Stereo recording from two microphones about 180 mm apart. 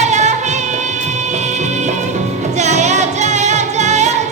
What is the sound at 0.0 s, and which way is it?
Music, 40° right (ahead or behind).